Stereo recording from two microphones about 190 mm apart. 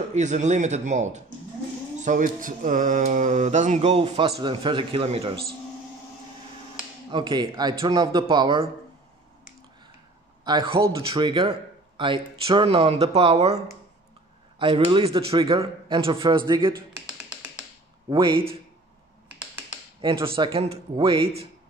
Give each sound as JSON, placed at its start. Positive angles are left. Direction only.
{"t": 0.1, "sound": "speech", "side_deg": -40}
{"t": 7.1, "sound": "speech", "side_deg": -25}
{"t": 10.4, "sound": "speech", "side_deg": -25}
{"t": 14.6, "sound": "speech", "side_deg": -25}
{"t": 18.1, "sound": "speech", "side_deg": -25}
{"t": 20.0, "sound": "speech", "side_deg": -25}